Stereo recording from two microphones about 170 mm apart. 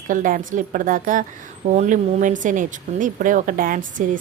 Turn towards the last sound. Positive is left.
turn(degrees=-55)  # may be behind; listen again after turning